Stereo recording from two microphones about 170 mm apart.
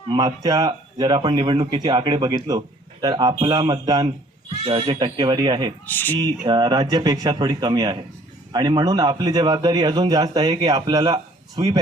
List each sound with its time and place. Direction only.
0.1 s speech: 20° right (ahead or behind)
5.8 s speech: 10° left (ahead or behind)
6.1 s speech: 25° right (ahead or behind)